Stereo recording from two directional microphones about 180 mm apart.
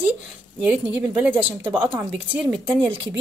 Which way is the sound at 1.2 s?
10° right (ahead or behind).